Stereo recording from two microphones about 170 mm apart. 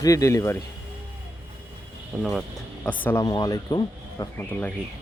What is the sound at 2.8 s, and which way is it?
Speech, 10° left (ahead or behind).